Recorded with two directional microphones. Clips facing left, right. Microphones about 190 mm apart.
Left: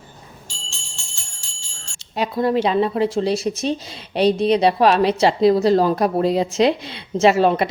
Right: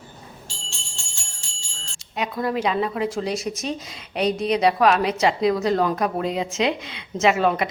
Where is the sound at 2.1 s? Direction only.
30° left (ahead or behind).